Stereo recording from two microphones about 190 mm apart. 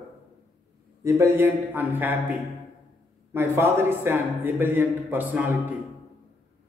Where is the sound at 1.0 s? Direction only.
10° right (ahead or behind).